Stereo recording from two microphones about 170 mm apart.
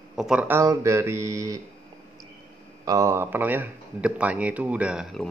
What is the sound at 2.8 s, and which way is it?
Speech, 20° right (ahead or behind).